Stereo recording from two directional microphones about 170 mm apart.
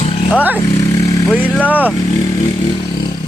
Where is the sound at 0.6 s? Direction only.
20° left (ahead or behind).